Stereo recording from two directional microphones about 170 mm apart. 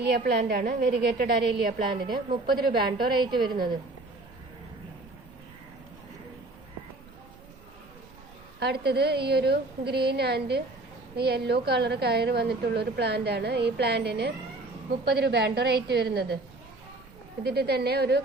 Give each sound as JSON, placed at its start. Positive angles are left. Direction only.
{"t": 0.1, "sound": "a woman's voice", "side_deg": -75}
{"t": 1.9, "sound": "a woman's voice", "side_deg": -25}
{"t": 2.6, "sound": "a woman's voice", "side_deg": -65}
{"t": 3.2, "sound": "a woman's voice", "side_deg": -25}
{"t": 8.5, "sound": "a woman's voice", "side_deg": -75}
{"t": 17.4, "sound": "a woman's voice", "side_deg": -70}